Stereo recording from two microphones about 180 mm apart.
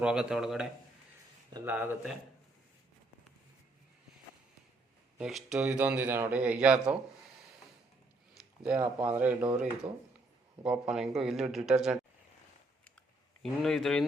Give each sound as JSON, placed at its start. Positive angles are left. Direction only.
{"t": 0.0, "sound": "speech", "side_deg": -5}
{"t": 5.1, "sound": "speech", "side_deg": -5}
{"t": 8.6, "sound": "speech", "side_deg": -10}
{"t": 9.8, "sound": "speech", "side_deg": -35}
{"t": 10.6, "sound": "speech", "side_deg": -5}
{"t": 13.4, "sound": "speech", "side_deg": 0}